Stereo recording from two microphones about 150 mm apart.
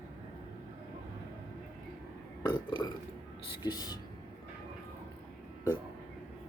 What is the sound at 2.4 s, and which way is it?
Burping, 30° left (ahead or behind).